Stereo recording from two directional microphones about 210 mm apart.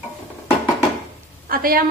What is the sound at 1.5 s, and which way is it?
Speech, 45° right (ahead or behind).